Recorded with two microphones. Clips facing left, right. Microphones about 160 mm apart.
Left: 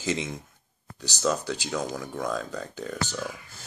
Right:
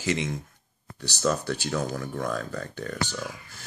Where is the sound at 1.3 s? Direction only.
15° left (ahead or behind).